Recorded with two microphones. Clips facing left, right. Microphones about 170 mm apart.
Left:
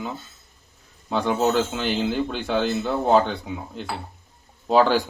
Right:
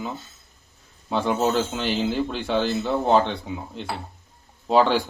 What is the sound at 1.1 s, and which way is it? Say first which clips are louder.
Speech: left 1 dB; centre (ahead or behind).